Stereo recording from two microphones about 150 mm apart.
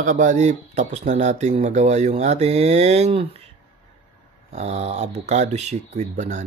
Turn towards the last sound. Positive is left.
turn(degrees=-50)  # may be behind; listen again after turning